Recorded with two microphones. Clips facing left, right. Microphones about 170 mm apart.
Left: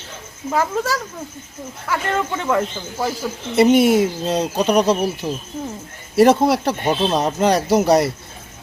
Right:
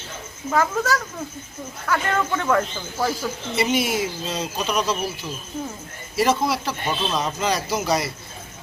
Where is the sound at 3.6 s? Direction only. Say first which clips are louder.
Left 10 dB; 55° left (ahead or behind).